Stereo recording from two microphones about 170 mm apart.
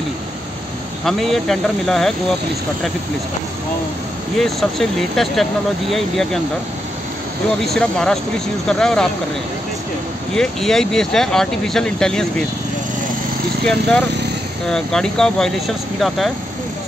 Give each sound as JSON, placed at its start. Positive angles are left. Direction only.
{"t": 1.0, "sound": "speech", "side_deg": 0}
{"t": 4.4, "sound": "speech", "side_deg": 0}
{"t": 7.4, "sound": "speech", "side_deg": 5}
{"t": 10.3, "sound": "speech", "side_deg": 5}
{"t": 13.7, "sound": "speech", "side_deg": 5}